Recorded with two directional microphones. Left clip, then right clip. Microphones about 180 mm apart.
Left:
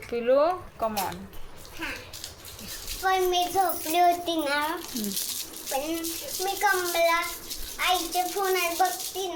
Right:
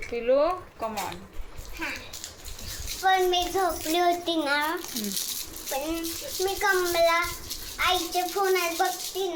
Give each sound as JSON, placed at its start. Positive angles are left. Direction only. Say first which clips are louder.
{"t": 0.1, "sound": "speech", "louder": "left 1 dB", "side_deg": 15}
{"t": 3.0, "sound": "a child's voice", "louder": "right 1 dB", "side_deg": -10}